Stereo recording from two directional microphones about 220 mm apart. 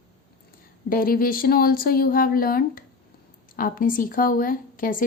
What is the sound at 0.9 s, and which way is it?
Speech, 40° left (ahead or behind).